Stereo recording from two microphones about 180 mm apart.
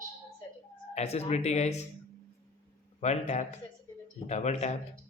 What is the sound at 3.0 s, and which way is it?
Speech, 40° left (ahead or behind).